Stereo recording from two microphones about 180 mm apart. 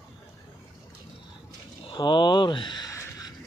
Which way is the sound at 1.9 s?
25° left (ahead or behind).